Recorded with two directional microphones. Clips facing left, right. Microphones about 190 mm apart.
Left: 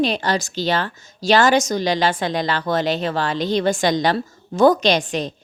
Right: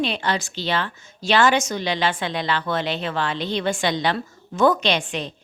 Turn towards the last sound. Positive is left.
turn(degrees=40)  # may be behind; listen again after turning